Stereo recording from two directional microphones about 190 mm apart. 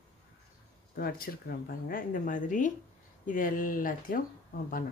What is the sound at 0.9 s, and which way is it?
Speech, 50° left (ahead or behind).